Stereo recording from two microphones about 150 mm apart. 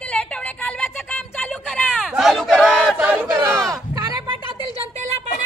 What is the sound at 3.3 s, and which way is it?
Speech, 20° right (ahead or behind).